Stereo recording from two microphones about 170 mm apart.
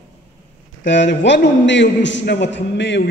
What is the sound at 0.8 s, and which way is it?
A man's voice, 90° left.